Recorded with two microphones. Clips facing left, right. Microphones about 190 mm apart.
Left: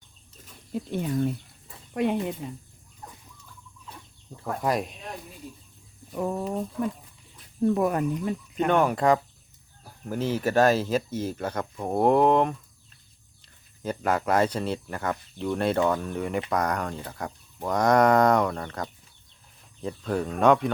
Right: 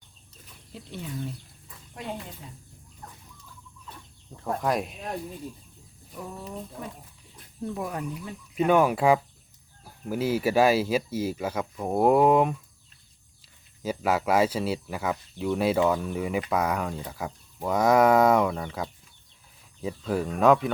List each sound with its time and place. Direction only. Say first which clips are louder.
0.7 s speech: left 9 dB; 50° left (ahead or behind)
4.6 s speech: left 2 dB; centre (ahead or behind)
6.1 s speech: left 9 dB; 60° left (ahead or behind)
8.5 s speech: right 2 dB; 5° right (ahead or behind)